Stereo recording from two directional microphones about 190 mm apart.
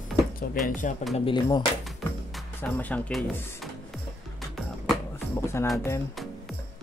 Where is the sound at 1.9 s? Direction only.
Centre (ahead or behind).